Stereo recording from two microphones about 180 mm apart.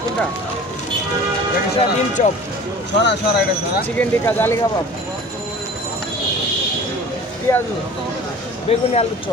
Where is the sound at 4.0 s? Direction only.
10° left (ahead or behind).